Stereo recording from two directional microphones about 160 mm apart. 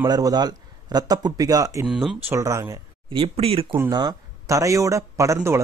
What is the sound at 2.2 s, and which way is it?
Speech, 20° right (ahead or behind).